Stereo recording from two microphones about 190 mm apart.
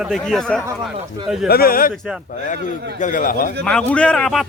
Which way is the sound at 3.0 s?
45° left (ahead or behind).